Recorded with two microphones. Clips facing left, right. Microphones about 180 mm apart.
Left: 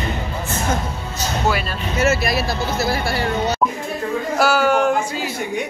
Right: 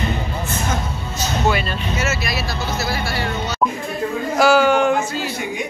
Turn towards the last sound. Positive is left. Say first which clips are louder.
# right 1 dB
turn(degrees=5)  # may be behind; listen again after turning